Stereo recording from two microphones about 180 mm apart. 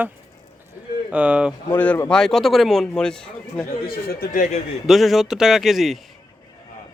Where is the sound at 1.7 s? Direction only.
10° left (ahead or behind).